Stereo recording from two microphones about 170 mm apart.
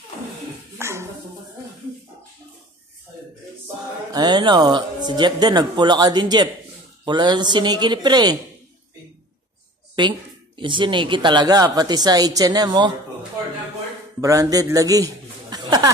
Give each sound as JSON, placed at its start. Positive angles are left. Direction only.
{"t": 0.7, "sound": "dog", "side_deg": -15}
{"t": 4.1, "sound": "speech", "side_deg": -25}
{"t": 9.9, "sound": "speech", "side_deg": -30}
{"t": 14.2, "sound": "speech", "side_deg": -20}
{"t": 15.5, "sound": "a sound", "side_deg": -25}